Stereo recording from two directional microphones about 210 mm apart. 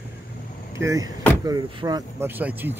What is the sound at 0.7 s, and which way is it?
Speech, 15° right (ahead or behind).